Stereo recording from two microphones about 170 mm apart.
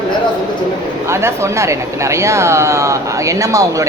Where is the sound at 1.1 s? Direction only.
15° right (ahead or behind).